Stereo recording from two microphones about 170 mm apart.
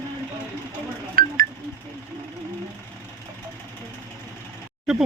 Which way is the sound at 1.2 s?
60° right (ahead or behind).